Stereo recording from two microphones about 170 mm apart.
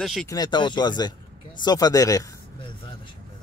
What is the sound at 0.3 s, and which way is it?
Speech, 25° left (ahead or behind).